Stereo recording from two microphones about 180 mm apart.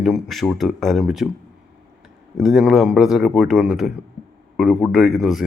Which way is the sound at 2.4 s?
Centre (ahead or behind).